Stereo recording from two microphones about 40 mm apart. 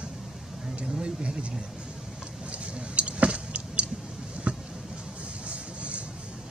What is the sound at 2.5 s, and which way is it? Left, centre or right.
Vehicle, right.